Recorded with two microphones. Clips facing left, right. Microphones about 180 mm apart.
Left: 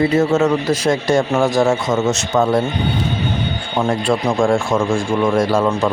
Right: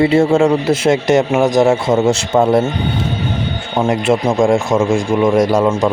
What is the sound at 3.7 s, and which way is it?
A man's voice, 20° right (ahead or behind).